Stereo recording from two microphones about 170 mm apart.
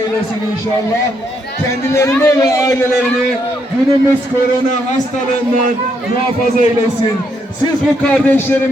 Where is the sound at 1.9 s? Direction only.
15° left (ahead or behind).